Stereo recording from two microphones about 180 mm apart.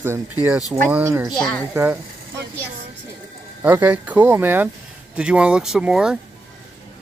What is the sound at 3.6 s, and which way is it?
Speech, 10° right (ahead or behind).